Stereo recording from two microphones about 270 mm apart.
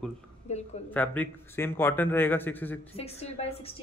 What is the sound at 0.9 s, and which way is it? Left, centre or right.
Speech, centre.